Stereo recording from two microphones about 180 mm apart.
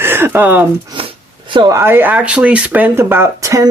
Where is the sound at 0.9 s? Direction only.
25° right (ahead or behind).